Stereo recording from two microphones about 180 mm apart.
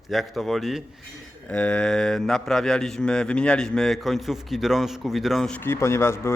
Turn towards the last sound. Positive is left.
turn(degrees=15)  # may be behind; listen again after turning